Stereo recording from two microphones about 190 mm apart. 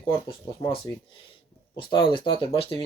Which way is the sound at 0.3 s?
25° left (ahead or behind).